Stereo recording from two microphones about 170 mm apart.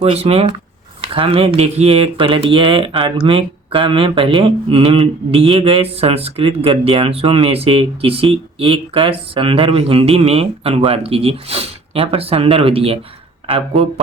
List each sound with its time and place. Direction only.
0.0 s speech: 35° right (ahead or behind)